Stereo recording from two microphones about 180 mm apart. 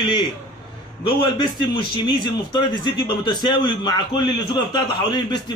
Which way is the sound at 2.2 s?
25° left (ahead or behind).